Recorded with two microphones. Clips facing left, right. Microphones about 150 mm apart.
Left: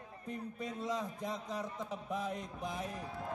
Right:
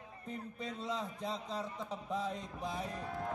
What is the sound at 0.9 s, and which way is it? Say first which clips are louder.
A man's voice: even; 15° left (ahead or behind).